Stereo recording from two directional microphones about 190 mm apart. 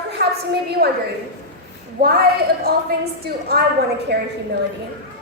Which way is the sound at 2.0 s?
55° right (ahead or behind).